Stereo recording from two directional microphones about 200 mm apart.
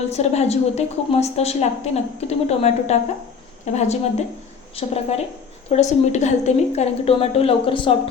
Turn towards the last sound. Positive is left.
turn(degrees=25)  # may be behind; listen again after turning